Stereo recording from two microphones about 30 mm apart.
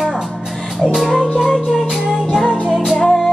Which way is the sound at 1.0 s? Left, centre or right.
Centre.